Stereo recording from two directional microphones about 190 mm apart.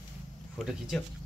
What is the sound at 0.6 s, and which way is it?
Speech, centre (ahead or behind).